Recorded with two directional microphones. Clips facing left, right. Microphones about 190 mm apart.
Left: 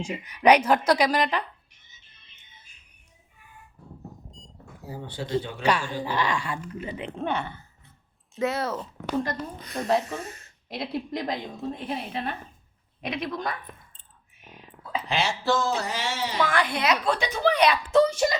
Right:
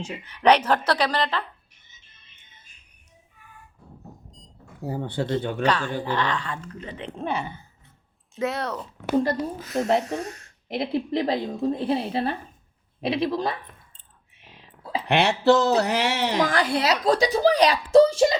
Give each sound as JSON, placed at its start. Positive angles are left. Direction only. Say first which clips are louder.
{"t": 0.0, "sound": "speech", "louder": "even", "side_deg": 10}
{"t": 4.9, "sound": "speech", "louder": "right 4 dB", "side_deg": -60}
{"t": 5.6, "sound": "speech", "louder": "right 1 dB", "side_deg": 10}
{"t": 7.3, "sound": "speech", "louder": "right 2 dB", "side_deg": -5}
{"t": 10.7, "sound": "a child's voice", "louder": "right 5 dB", "side_deg": -25}
{"t": 14.5, "sound": "whispering", "louder": "right 2 dB", "side_deg": -30}
{"t": 15.0, "sound": "speech", "louder": "right 8 dB", "side_deg": -65}
{"t": 16.4, "sound": "a child's voice", "louder": "right 1 dB", "side_deg": -35}